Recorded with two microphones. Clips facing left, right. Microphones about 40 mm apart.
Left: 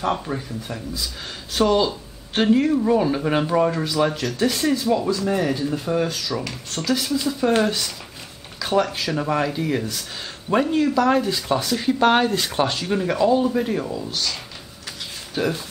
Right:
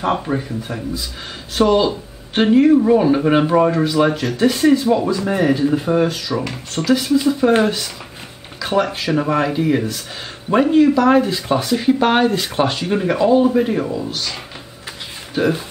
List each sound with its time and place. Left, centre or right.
0.0 s speech: centre
15.3 s speech: centre